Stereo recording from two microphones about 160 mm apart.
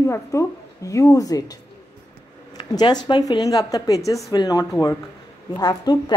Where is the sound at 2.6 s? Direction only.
25° left (ahead or behind).